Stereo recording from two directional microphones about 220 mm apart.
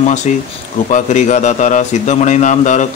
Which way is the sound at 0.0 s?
30° left (ahead or behind).